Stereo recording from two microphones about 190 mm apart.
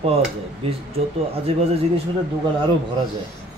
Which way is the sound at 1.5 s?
30° right (ahead or behind).